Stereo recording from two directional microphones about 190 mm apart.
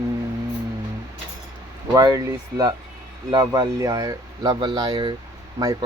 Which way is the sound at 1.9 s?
20° right (ahead or behind).